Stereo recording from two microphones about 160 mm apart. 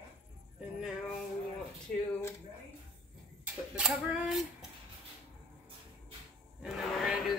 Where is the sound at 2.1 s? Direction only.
15° left (ahead or behind).